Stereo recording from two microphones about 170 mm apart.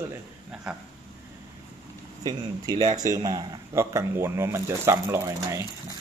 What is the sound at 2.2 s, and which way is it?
Speech, 20° right (ahead or behind).